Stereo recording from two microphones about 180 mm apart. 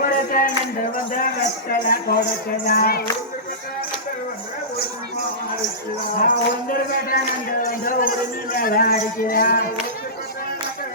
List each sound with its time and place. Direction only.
0.0 s music: 50° left (ahead or behind)
1.7 s speech: 55° left (ahead or behind)
6.1 s speech: 50° left (ahead or behind)